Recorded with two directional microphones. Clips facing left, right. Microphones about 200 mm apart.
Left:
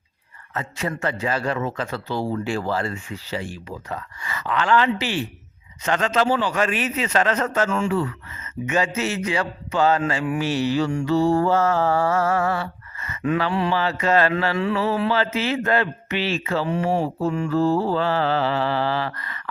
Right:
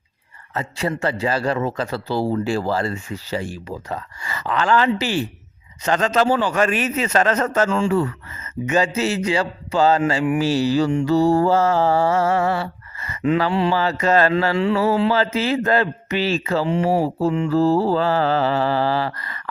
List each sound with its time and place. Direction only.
0.5 s a man's voice: 30° right (ahead or behind)
13.4 s mantra: 30° right (ahead or behind)
13.7 s speech: 40° right (ahead or behind)
15.1 s speech: 40° right (ahead or behind)
16.6 s mantra: 25° right (ahead or behind)
17.5 s speech: 35° right (ahead or behind)